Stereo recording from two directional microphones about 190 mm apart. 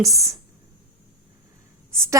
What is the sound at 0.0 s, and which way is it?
Speech, 15° right (ahead or behind).